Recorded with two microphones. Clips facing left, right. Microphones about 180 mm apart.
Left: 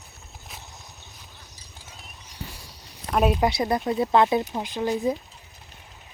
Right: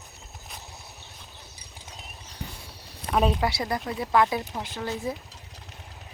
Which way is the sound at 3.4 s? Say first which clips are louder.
Left 5 dB; 20° left (ahead or behind).